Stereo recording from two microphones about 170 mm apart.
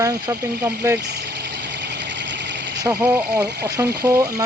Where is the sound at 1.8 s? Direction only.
90° right.